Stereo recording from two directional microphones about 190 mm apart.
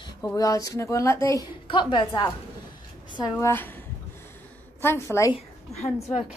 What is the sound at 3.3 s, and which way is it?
Speech, 10° left (ahead or behind).